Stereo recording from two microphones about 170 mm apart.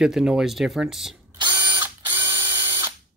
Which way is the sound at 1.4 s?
25° right (ahead or behind).